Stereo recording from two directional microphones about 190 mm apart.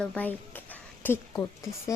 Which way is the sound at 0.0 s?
5° left (ahead or behind).